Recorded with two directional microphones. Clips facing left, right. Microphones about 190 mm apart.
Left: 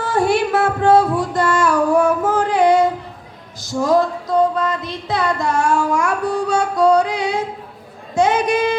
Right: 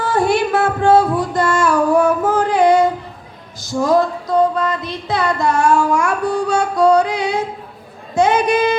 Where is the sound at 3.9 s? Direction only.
60° right (ahead or behind).